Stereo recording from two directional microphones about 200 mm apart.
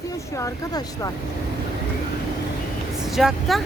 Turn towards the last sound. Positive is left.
turn(degrees=0)  # may be behind; listen again after turning